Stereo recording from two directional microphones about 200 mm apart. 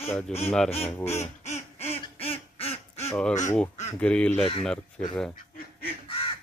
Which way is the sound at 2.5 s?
30° left (ahead or behind).